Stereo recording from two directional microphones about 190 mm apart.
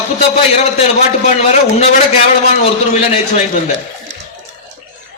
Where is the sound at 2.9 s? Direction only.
35° left (ahead or behind).